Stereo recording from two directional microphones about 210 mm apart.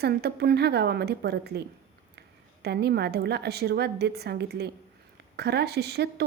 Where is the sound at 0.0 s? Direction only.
50° right (ahead or behind).